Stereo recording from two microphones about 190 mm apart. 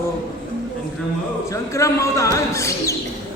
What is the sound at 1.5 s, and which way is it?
A man's voice, 15° left (ahead or behind).